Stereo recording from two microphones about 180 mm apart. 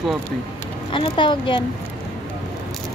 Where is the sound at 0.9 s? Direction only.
25° left (ahead or behind).